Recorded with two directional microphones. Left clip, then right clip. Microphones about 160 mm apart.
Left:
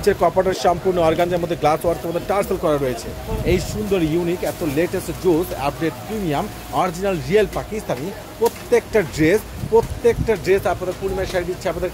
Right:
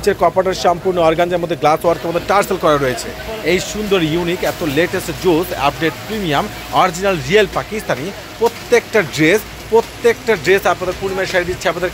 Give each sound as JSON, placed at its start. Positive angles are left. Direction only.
{"t": 0.0, "sound": "speech", "side_deg": 15}
{"t": 8.6, "sound": "speech", "side_deg": 15}